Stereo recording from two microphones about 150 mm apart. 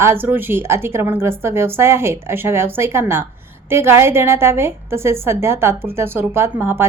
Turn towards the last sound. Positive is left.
turn(degrees=-15)  # may be behind; listen again after turning